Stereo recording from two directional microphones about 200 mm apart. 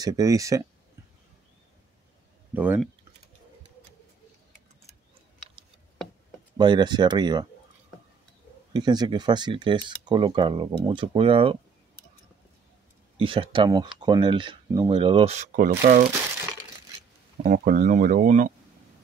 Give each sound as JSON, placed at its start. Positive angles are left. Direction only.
{"t": 0.0, "sound": "speech", "side_deg": -20}
{"t": 2.5, "sound": "speech", "side_deg": -10}
{"t": 6.6, "sound": "speech", "side_deg": -20}
{"t": 8.7, "sound": "speech", "side_deg": -20}
{"t": 13.2, "sound": "speech", "side_deg": -25}
{"t": 17.4, "sound": "speech", "side_deg": -45}